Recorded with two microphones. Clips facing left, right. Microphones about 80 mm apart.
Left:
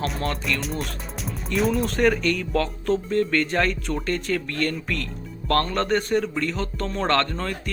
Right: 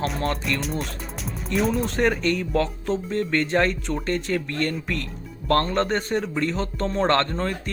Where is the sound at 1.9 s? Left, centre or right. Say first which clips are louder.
Left 1 dB; right.